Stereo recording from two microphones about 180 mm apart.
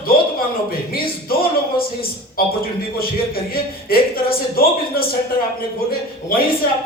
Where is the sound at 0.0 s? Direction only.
55° left (ahead or behind).